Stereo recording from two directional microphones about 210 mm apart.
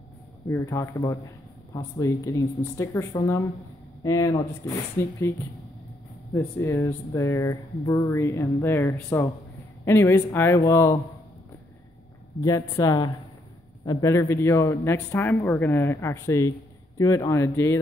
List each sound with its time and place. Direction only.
0.5 s speech: 15° left (ahead or behind)
12.4 s speech: 15° left (ahead or behind)